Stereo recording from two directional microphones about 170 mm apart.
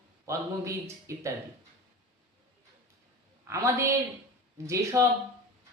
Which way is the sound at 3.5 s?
15° right (ahead or behind).